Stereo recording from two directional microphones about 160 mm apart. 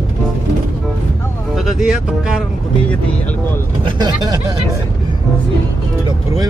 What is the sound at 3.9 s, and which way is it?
Speech, 25° right (ahead or behind).